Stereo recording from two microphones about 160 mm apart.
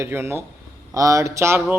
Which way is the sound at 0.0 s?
15° right (ahead or behind).